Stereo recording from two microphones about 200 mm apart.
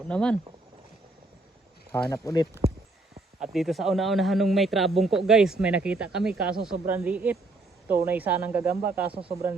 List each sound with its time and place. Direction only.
0.1 s a man's voice: 5° left (ahead or behind)
1.9 s speech: 15° left (ahead or behind)
3.4 s a man's voice: centre (ahead or behind)